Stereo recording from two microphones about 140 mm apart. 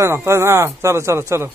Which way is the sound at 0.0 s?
20° right (ahead or behind).